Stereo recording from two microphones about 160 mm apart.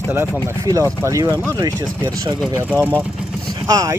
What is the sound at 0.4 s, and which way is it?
Speech, 20° right (ahead or behind).